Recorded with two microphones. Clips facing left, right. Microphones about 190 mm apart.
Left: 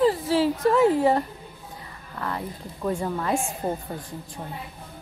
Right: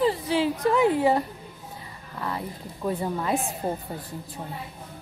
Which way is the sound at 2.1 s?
15° right (ahead or behind).